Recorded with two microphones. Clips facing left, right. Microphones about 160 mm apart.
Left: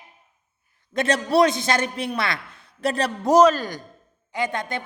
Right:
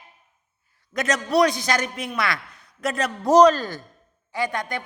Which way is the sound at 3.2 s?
10° left (ahead or behind).